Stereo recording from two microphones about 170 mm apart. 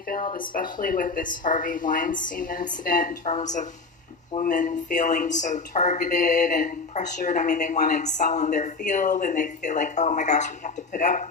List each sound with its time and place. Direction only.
0.1 s speech: 55° left (ahead or behind)